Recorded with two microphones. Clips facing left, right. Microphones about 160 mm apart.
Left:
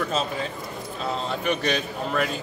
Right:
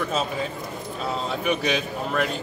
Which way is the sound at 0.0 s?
5° right (ahead or behind).